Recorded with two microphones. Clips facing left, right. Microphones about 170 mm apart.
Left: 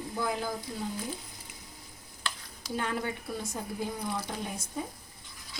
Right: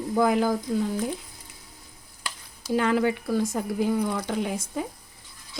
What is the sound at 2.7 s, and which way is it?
Speech, 90° right.